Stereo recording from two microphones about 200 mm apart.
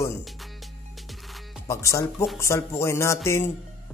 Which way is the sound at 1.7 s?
15° left (ahead or behind).